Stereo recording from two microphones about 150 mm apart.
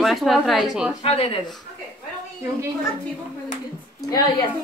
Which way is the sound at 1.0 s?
40° left (ahead or behind).